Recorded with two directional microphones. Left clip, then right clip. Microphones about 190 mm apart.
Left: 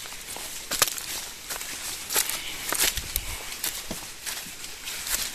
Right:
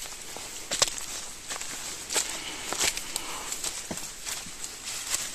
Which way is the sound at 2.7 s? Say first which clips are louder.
Left 3 dB; 70° left (ahead or behind).